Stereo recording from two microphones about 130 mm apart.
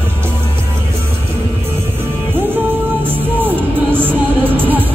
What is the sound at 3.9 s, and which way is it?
Music, 15° right (ahead or behind).